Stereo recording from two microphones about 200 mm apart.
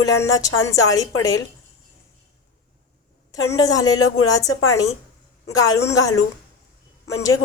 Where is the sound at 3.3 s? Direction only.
15° left (ahead or behind).